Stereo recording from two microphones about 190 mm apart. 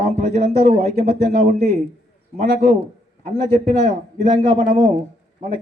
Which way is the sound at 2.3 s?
35° right (ahead or behind).